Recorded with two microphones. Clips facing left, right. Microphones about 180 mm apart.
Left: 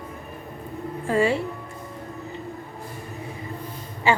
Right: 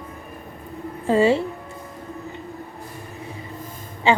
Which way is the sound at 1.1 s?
25° right (ahead or behind).